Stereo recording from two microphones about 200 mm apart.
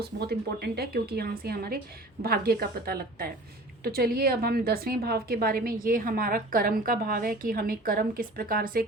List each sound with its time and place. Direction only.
0.0 s a woman's voice: 55° right (ahead or behind)